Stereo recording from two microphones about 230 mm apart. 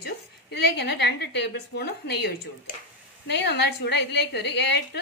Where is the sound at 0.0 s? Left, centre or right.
Left.